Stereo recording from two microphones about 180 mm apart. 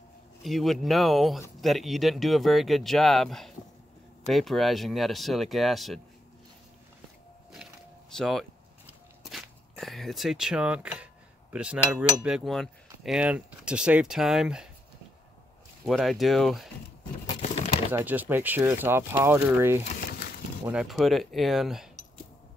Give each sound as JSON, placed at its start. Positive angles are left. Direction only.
{"t": 0.4, "sound": "cutlery", "side_deg": 0}
{"t": 8.1, "sound": "cutlery", "side_deg": 0}
{"t": 8.8, "sound": "walk", "side_deg": 0}
{"t": 11.5, "sound": "cutlery", "side_deg": -5}
{"t": 15.9, "sound": "cutlery", "side_deg": 0}
{"t": 17.4, "sound": "crumpling", "side_deg": 35}
{"t": 17.9, "sound": "speech", "side_deg": -10}
{"t": 20.1, "sound": "a sound", "side_deg": 55}
{"t": 20.6, "sound": "cutlery", "side_deg": -5}